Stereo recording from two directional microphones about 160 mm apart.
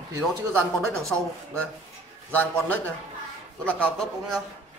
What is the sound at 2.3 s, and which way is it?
A man's voice, 10° left (ahead or behind).